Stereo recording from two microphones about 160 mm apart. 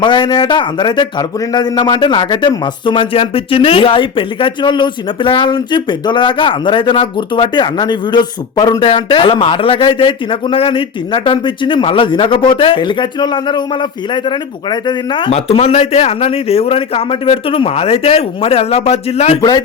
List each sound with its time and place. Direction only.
0.0 s speech: 30° left (ahead or behind)
19.4 s speech: 25° left (ahead or behind)